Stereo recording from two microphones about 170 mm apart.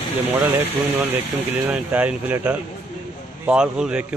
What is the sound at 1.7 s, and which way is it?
A man's voice, 10° right (ahead or behind).